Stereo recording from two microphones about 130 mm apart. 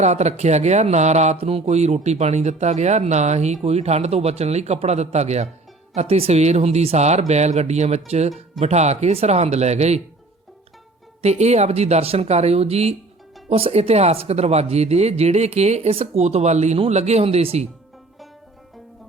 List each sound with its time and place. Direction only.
0.0 s speech: 60° right (ahead or behind)
11.2 s speech: 55° right (ahead or behind)